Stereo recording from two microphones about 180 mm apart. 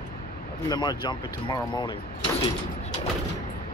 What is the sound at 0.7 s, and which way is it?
Speech, 25° left (ahead or behind).